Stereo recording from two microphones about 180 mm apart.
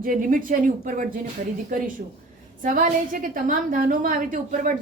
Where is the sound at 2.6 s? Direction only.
50° right (ahead or behind).